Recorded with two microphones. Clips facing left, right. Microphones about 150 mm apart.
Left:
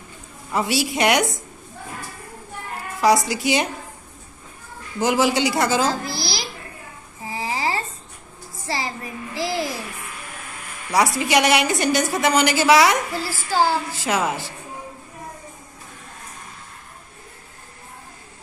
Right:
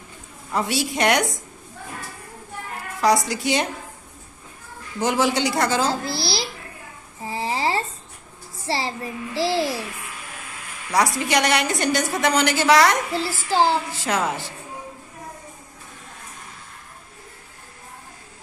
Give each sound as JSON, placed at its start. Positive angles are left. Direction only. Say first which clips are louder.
{"t": 0.5, "sound": "a woman's voice", "louder": "left 2 dB", "side_deg": 5}
{"t": 3.0, "sound": "a woman's voice", "louder": "left 2 dB", "side_deg": 5}
{"t": 4.9, "sound": "a woman's voice", "louder": "left 2 dB", "side_deg": 5}
{"t": 5.9, "sound": "a child's voice", "louder": "even", "side_deg": -25}
{"t": 7.2, "sound": "a sound", "louder": "right 1 dB", "side_deg": -30}
{"t": 8.6, "sound": "a child's voice", "louder": "right 2 dB", "side_deg": -30}
{"t": 10.9, "sound": "a woman's voice", "louder": "left 2 dB", "side_deg": 5}
{"t": 13.1, "sound": "a child's voice", "louder": "right 1 dB", "side_deg": -25}
{"t": 14.0, "sound": "a woman's voice", "louder": "left 2 dB", "side_deg": 5}